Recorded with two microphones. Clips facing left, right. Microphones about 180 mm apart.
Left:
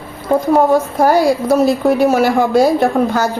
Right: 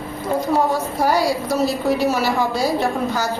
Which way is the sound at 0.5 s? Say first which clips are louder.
Left 8 dB; 50° left (ahead or behind).